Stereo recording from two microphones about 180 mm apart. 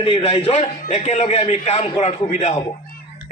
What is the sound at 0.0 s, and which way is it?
A man's voice, 30° left (ahead or behind).